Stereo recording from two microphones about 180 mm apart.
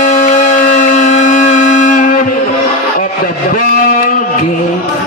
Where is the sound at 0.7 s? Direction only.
45° left (ahead or behind).